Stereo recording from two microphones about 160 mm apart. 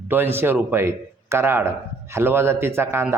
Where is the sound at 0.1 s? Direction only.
15° right (ahead or behind).